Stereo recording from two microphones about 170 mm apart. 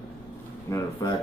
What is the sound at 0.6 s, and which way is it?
Speech, 15° left (ahead or behind).